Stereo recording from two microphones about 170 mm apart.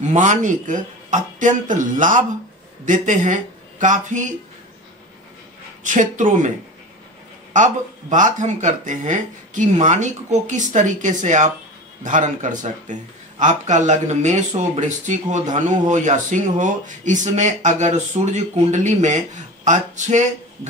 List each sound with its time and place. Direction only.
0.0 s speech: 45° right (ahead or behind)
5.9 s speech: 50° right (ahead or behind)
7.5 s speech: 45° right (ahead or behind)